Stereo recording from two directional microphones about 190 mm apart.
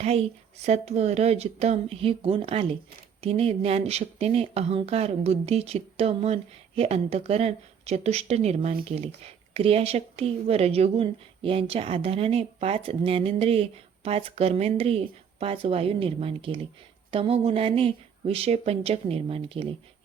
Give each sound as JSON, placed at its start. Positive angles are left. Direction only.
{"t": 0.0, "sound": "speech", "side_deg": -35}